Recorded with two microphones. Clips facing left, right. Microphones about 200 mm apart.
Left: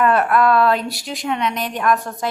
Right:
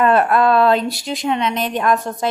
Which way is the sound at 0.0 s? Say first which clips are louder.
Right 2 dB; 25° right (ahead or behind).